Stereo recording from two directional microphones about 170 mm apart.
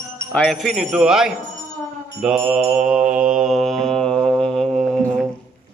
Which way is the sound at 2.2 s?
5° right (ahead or behind).